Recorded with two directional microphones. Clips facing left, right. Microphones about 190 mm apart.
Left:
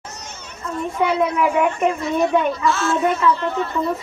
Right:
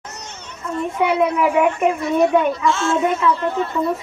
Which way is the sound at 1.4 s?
5° right (ahead or behind).